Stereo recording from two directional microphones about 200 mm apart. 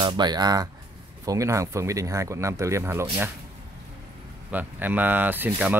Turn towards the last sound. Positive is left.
turn(degrees=-10)  # may be behind; listen again after turning